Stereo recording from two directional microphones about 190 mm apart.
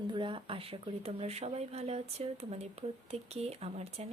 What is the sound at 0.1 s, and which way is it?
A woman's voice, 25° right (ahead or behind).